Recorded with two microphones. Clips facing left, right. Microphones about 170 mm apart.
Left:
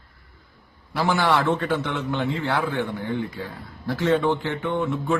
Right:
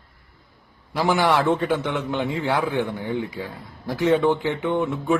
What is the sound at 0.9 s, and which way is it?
A man's voice, 15° right (ahead or behind).